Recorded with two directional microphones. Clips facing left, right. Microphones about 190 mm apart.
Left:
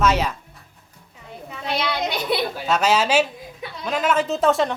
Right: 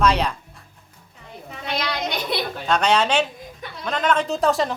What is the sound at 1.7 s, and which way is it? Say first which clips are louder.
Speech: left 2 dB; 5° left (ahead or behind).